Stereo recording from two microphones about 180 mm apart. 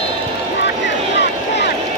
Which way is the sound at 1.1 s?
75° left (ahead or behind).